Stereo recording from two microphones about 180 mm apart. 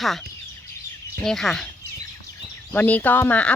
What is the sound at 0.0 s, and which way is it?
Speech, centre (ahead or behind).